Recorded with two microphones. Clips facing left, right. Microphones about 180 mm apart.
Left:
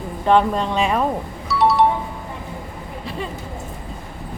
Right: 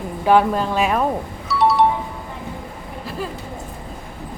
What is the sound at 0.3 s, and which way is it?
Speech, 5° right (ahead or behind).